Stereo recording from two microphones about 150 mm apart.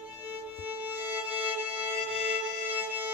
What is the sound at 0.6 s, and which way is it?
Violin, 10° right (ahead or behind).